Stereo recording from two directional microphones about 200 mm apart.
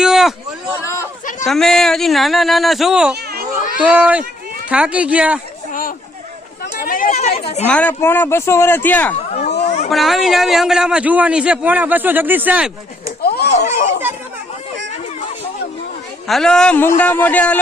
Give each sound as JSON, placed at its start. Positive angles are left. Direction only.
{"t": 0.0, "sound": "a sound", "side_deg": 0}
{"t": 0.7, "sound": "hubbub", "side_deg": 15}
{"t": 1.5, "sound": "a man's voice", "side_deg": 0}
{"t": 6.8, "sound": "chatter", "side_deg": 45}
{"t": 7.6, "sound": "speech", "side_deg": 5}
{"t": 9.6, "sound": "a sound", "side_deg": 35}
{"t": 9.9, "sound": "a man's voice", "side_deg": 0}
{"t": 13.2, "sound": "a sound", "side_deg": 55}
{"t": 16.2, "sound": "a man's voice", "side_deg": 0}